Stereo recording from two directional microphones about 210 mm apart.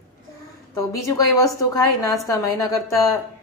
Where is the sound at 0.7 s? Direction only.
15° left (ahead or behind).